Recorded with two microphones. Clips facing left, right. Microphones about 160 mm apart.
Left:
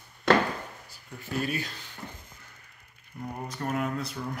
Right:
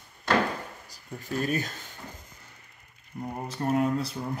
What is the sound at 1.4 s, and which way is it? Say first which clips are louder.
Speech: right 6 dB; 45° right (ahead or behind).